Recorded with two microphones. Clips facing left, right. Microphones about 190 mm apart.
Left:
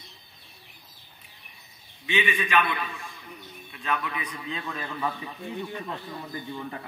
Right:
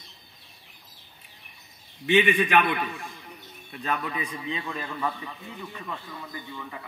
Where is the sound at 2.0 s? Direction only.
55° right (ahead or behind).